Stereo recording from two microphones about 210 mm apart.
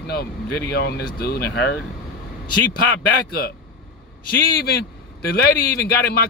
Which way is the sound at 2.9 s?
45° left (ahead or behind).